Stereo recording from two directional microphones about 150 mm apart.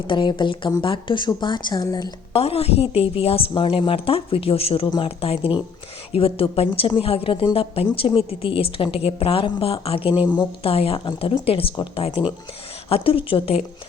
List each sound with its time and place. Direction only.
0.1 s a woman's voice: 30° left (ahead or behind)
2.3 s a woman's voice: 40° left (ahead or behind)